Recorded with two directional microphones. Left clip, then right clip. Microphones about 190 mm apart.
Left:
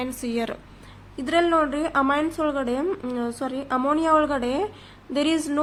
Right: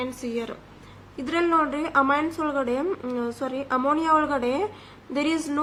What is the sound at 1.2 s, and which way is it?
A woman's voice, 25° left (ahead or behind).